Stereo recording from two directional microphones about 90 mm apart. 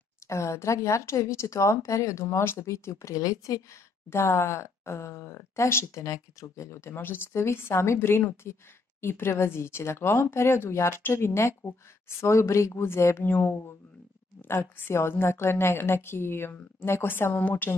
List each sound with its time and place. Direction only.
0.3 s speech: 30° left (ahead or behind)